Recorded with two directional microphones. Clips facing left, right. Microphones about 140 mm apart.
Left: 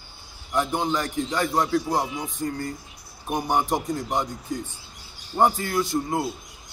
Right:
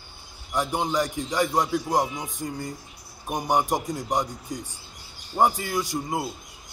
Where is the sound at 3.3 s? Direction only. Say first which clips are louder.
Even; 15° right (ahead or behind).